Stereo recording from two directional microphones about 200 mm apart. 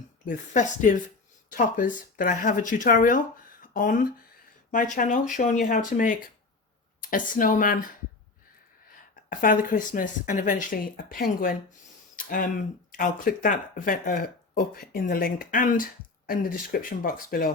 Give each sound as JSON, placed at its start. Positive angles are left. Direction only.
{"t": 0.3, "sound": "speech", "side_deg": 40}
{"t": 9.3, "sound": "speech", "side_deg": 40}
{"t": 12.1, "sound": "a sound", "side_deg": 45}
{"t": 12.9, "sound": "speech", "side_deg": 45}